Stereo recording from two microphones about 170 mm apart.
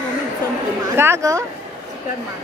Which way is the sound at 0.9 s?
15° right (ahead or behind).